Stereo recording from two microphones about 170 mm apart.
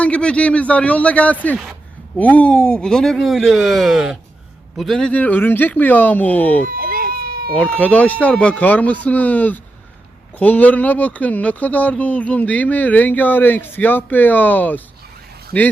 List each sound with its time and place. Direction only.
0.0 s speech: 5° left (ahead or behind)
6.7 s baby cry: 60° right (ahead or behind)
7.5 s speech: 10° left (ahead or behind)